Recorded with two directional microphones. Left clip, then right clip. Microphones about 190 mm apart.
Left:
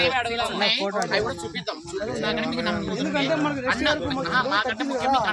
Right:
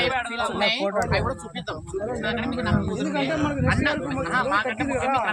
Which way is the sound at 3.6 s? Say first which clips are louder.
Left 2 dB; 45° right (ahead or behind).